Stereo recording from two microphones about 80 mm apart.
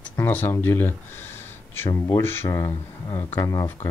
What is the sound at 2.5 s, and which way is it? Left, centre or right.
Speech, left.